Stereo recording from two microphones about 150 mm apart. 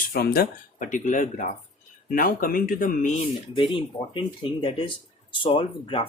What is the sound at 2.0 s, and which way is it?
Speech, 70° left (ahead or behind).